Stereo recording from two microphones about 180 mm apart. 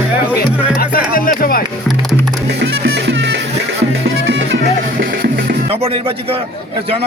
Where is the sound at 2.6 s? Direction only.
80° right.